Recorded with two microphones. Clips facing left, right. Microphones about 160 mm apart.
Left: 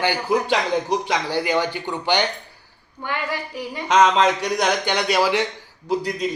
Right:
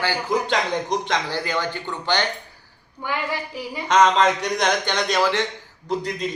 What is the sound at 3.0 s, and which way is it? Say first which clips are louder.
Speech: even; 10° right (ahead or behind).